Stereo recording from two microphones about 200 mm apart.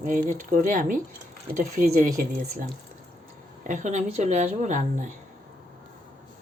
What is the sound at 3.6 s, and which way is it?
Speech, 40° right (ahead or behind).